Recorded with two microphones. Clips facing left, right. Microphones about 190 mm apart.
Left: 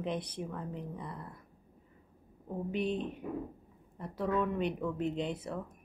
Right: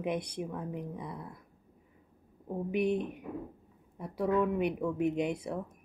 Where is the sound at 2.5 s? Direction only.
10° right (ahead or behind).